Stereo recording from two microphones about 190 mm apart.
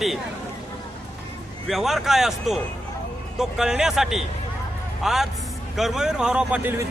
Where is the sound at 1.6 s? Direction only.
Centre (ahead or behind).